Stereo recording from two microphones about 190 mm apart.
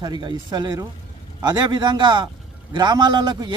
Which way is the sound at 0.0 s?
25° right (ahead or behind).